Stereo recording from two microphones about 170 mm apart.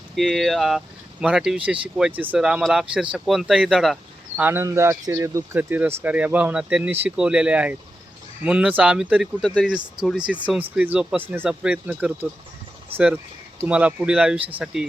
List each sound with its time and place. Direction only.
0.2 s speech: centre (ahead or behind)
4.4 s speech: 10° right (ahead or behind)
13.6 s speech: 5° right (ahead or behind)